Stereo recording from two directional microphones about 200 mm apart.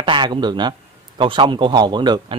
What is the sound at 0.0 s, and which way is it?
A man's voice, 25° right (ahead or behind).